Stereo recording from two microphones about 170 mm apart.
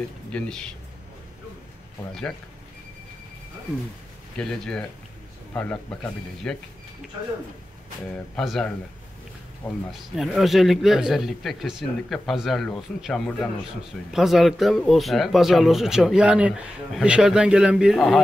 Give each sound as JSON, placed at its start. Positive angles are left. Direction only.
{"t": 0.3, "sound": "speech", "side_deg": 5}
{"t": 4.4, "sound": "a man's voice", "side_deg": 5}
{"t": 8.4, "sound": "speech", "side_deg": 5}
{"t": 9.8, "sound": "speech", "side_deg": 0}